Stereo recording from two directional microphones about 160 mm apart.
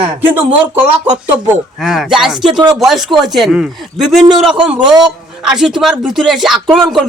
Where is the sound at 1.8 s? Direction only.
Centre (ahead or behind).